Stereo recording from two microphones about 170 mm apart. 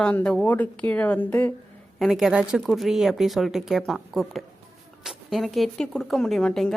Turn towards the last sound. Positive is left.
turn(degrees=5)  # may be behind; listen again after turning